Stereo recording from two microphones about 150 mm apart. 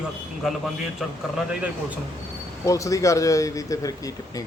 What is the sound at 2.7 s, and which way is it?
Speech, 20° left (ahead or behind).